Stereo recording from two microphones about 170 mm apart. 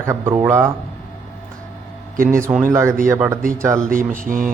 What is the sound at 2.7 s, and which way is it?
Speech, 15° right (ahead or behind).